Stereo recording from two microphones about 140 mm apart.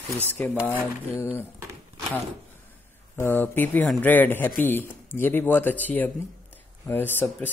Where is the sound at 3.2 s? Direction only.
15° left (ahead or behind).